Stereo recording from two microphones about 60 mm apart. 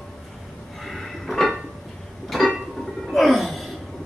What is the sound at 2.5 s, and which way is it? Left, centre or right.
Music, centre.